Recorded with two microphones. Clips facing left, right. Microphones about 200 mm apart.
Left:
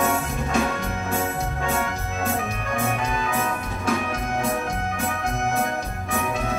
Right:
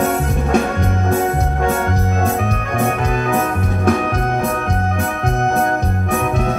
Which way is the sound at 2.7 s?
60° right (ahead or behind).